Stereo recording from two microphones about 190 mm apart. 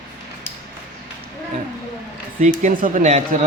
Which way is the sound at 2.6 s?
40° right (ahead or behind).